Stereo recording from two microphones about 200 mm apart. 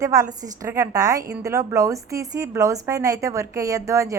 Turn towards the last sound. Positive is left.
turn(degrees=-15)  # may be behind; listen again after turning